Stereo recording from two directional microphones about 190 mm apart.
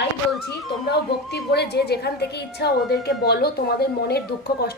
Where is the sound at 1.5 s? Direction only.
60° left (ahead or behind).